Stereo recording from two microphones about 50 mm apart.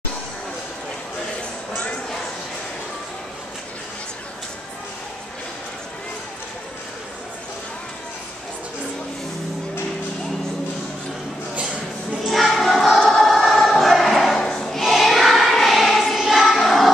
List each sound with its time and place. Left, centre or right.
12.3 s music: centre
13.1 s choir: centre